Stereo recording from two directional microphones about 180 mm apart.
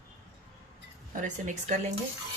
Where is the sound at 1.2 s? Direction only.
40° right (ahead or behind).